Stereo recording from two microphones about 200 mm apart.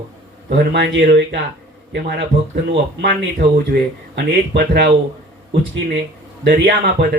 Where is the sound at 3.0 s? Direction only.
50° right (ahead or behind).